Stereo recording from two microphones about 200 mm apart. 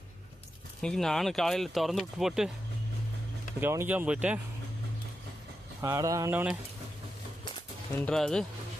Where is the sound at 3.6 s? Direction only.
10° right (ahead or behind).